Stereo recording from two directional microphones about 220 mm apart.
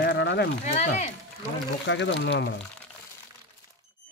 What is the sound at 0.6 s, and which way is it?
Speech, 30° left (ahead or behind).